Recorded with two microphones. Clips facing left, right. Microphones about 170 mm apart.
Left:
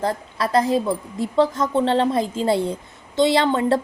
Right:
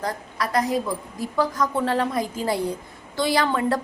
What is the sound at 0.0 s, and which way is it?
A woman's voice, 30° left (ahead or behind).